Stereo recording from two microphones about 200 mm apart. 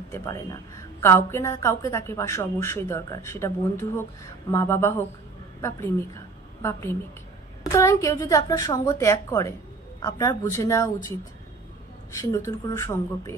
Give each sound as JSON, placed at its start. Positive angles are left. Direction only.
{"t": 0.1, "sound": "a woman's voice", "side_deg": 15}